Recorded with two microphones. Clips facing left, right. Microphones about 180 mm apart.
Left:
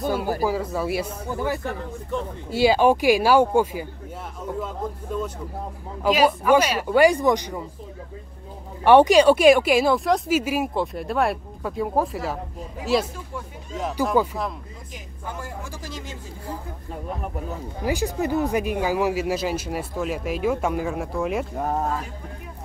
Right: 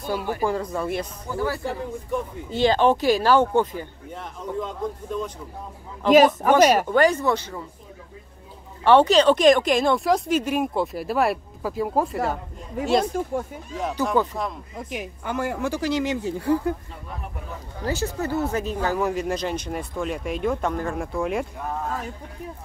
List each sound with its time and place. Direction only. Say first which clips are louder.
0.0 s speech: left 3 dB; 45° left (ahead or behind)
0.4 s speech: left 1 dB; 5° left (ahead or behind)
1.2 s speech: even; 20° left (ahead or behind)
1.6 s speech: right 2 dB; 15° right (ahead or behind)
2.5 s speech: left 1 dB; 10° left (ahead or behind)
6.6 s speech: right 8 dB; 45° right (ahead or behind)
6.9 s speech: left 2 dB; 10° left (ahead or behind)
8.8 s speech: left 2 dB; 15° left (ahead or behind)
13.1 s speech: right 9 dB; 50° right (ahead or behind)
13.7 s speech: left 1 dB; centre (ahead or behind)
14.9 s speech: right 7 dB; 70° right (ahead or behind)
17.8 s speech: left 2 dB; 15° left (ahead or behind)
21.5 s speech: left 5 dB; 40° left (ahead or behind)